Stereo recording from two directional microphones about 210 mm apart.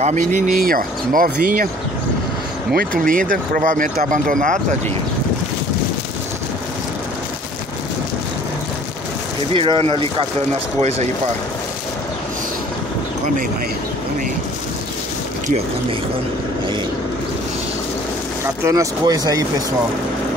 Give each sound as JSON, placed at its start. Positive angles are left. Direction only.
{"t": 0.0, "sound": "speech", "side_deg": -35}
{"t": 2.7, "sound": "speech", "side_deg": -45}
{"t": 9.5, "sound": "speech", "side_deg": -25}
{"t": 18.4, "sound": "speech", "side_deg": -15}